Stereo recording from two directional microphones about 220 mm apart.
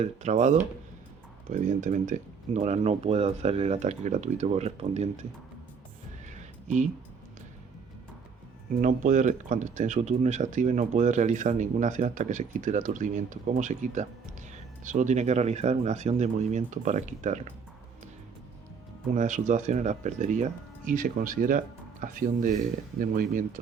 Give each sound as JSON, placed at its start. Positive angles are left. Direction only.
{"t": 0.0, "sound": "speech", "side_deg": -30}
{"t": 8.8, "sound": "speech", "side_deg": -35}
{"t": 19.1, "sound": "speech", "side_deg": -35}